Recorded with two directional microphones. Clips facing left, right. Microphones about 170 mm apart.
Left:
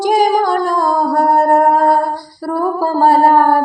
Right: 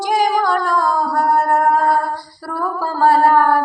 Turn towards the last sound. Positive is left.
turn(degrees=40)  # may be behind; listen again after turning